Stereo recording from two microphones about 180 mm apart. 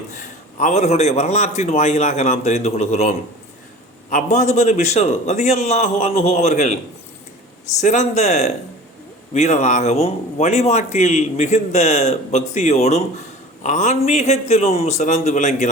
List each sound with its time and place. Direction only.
0.1 s a man's voice: 40° left (ahead or behind)
4.1 s a man's voice: 40° left (ahead or behind)
7.8 s a man's voice: 40° left (ahead or behind)